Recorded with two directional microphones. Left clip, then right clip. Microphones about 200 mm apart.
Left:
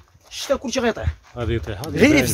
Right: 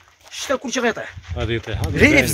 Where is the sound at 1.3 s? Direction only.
5° left (ahead or behind).